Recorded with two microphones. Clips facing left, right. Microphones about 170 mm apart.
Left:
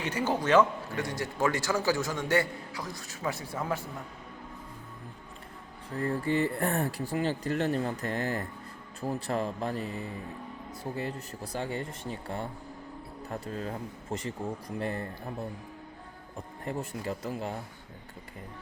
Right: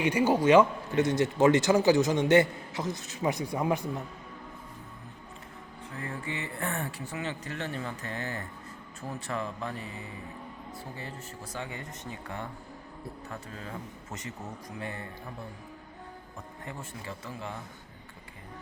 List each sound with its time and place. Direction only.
0.0 s a man's voice: 10° right (ahead or behind)
0.9 s a man's voice: 20° right (ahead or behind)
5.9 s speech: 35° left (ahead or behind)
11.3 s speech: 35° left (ahead or behind)
16.6 s speech: 35° left (ahead or behind)